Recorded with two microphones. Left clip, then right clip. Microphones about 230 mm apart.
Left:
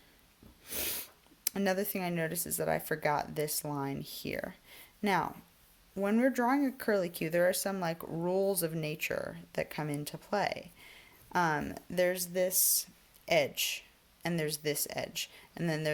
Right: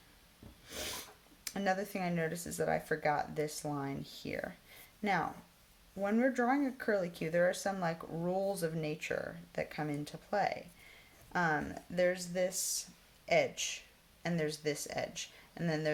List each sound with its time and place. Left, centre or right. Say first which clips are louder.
0.7 s snort: left 2 dB; left
1.5 s speech: left 2 dB; left